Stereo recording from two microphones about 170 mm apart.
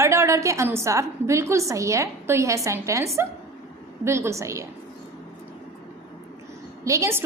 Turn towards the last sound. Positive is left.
turn(degrees=-15)  # may be behind; listen again after turning